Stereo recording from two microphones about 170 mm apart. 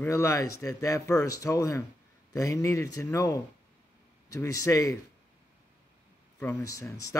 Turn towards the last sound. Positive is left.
turn(degrees=20)  # may be behind; listen again after turning